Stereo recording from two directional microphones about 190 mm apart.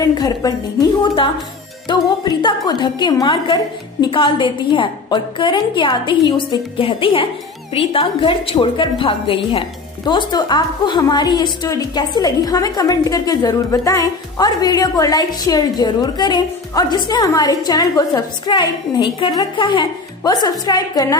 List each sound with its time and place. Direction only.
0.2 s a woman's voice: 20° left (ahead or behind)